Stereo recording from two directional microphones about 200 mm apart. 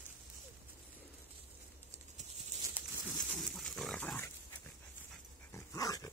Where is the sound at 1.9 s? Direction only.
35° right (ahead or behind).